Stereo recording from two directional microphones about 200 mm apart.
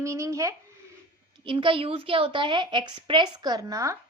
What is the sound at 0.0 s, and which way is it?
A woman's voice, 15° right (ahead or behind).